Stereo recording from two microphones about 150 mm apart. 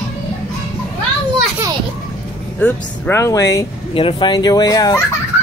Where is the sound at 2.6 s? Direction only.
10° left (ahead or behind).